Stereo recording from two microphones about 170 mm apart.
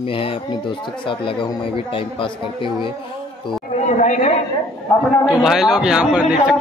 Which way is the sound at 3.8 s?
45° left (ahead or behind).